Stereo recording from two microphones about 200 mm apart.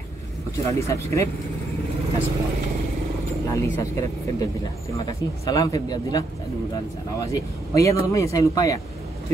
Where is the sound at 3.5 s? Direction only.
15° left (ahead or behind).